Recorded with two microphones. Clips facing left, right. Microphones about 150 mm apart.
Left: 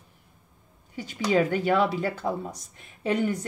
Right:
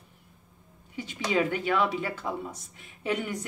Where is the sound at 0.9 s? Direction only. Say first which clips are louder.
Left 4 dB; 40° left (ahead or behind).